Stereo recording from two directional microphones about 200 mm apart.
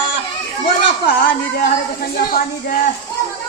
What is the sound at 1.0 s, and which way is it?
Speech, 45° left (ahead or behind).